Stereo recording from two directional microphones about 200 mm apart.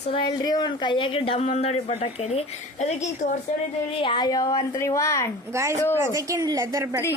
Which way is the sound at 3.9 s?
25° left (ahead or behind).